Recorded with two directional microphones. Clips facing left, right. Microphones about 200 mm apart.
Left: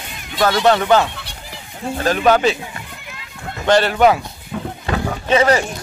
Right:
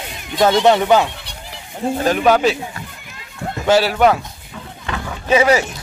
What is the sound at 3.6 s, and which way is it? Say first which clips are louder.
Speech: even; 5° right (ahead or behind).